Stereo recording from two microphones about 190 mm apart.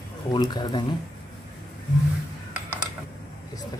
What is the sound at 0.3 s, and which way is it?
Speech, 20° left (ahead or behind).